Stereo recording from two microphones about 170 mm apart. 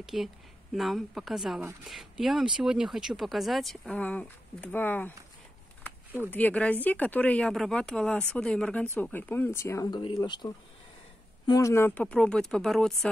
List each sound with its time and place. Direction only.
0.0 s speech: centre (ahead or behind)
6.3 s speech: 10° left (ahead or behind)